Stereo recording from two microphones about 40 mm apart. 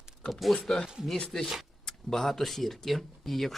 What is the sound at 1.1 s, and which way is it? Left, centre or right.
Speech, centre.